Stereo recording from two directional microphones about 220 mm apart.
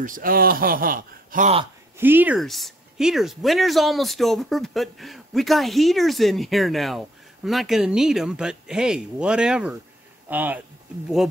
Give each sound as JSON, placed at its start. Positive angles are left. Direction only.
{"t": 0.0, "sound": "speech", "side_deg": -40}
{"t": 2.0, "sound": "speech", "side_deg": -10}